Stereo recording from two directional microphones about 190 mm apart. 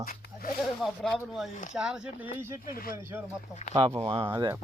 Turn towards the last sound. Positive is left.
turn(degrees=-20)  # may be behind; listen again after turning